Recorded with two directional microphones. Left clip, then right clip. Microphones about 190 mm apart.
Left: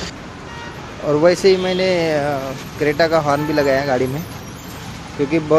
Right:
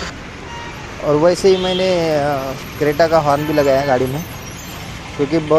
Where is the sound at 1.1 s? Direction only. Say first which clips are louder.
Right 1 dB; centre (ahead or behind).